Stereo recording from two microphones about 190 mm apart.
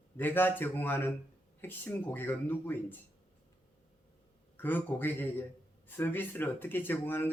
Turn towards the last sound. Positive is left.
turn(degrees=10)  # may be behind; listen again after turning